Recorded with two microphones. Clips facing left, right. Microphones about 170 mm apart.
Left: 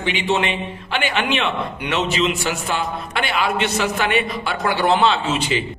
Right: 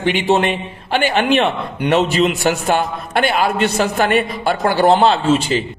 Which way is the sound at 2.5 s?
55° right (ahead or behind).